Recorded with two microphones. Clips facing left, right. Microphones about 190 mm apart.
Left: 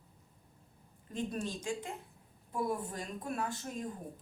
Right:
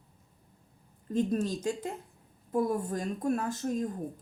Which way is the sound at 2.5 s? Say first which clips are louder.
Right 7 dB; 45° right (ahead or behind).